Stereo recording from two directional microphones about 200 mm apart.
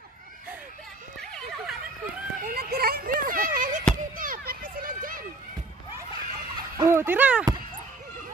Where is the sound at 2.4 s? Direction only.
50° right (ahead or behind).